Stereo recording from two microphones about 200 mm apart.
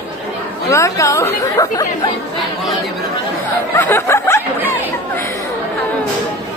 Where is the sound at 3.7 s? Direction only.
10° left (ahead or behind).